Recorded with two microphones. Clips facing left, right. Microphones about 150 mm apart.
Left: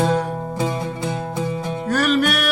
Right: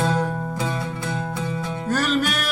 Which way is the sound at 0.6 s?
20° left (ahead or behind).